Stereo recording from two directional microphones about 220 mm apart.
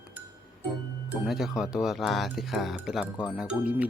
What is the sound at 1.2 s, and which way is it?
Speech, centre (ahead or behind).